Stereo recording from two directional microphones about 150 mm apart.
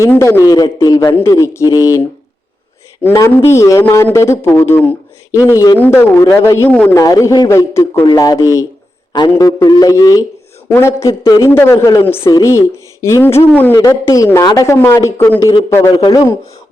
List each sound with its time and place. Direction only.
0.0 s a man's voice: 20° left (ahead or behind)
7.0 s a man's voice: 20° left (ahead or behind)